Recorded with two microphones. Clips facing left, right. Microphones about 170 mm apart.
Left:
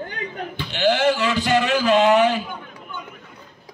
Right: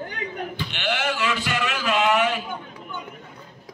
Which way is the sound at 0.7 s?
35° left (ahead or behind).